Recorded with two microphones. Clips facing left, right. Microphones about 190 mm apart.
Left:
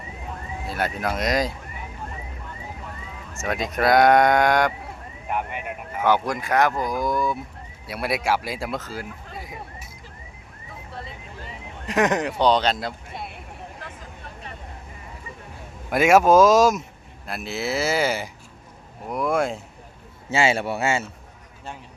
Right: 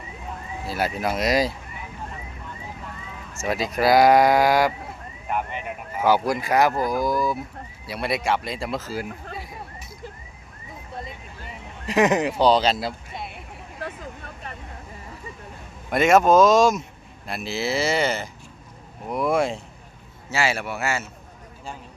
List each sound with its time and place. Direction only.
0.7 s speech: 5° right (ahead or behind)
3.4 s speech: centre (ahead or behind)
5.5 s speech: 10° left (ahead or behind)
6.0 s speech: 10° right (ahead or behind)
11.9 s speech: centre (ahead or behind)
15.9 s speech: 5° left (ahead or behind)
19.0 s speech: centre (ahead or behind)
20.3 s speech: 25° left (ahead or behind)